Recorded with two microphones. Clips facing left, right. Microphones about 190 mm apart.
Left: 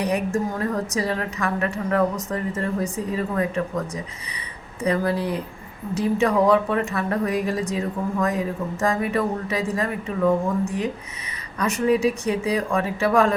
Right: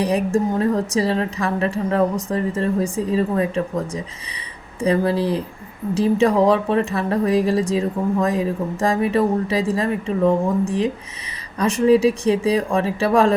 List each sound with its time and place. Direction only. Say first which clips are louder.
0.0 s speech: right 4 dB; 30° right (ahead or behind)